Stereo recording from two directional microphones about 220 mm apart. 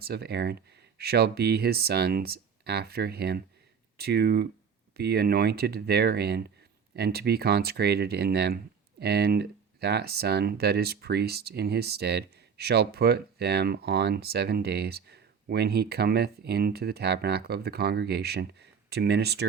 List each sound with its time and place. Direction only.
0.0 s speech: 45° right (ahead or behind)